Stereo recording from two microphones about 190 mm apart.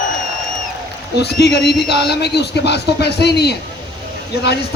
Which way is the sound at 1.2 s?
60° left (ahead or behind).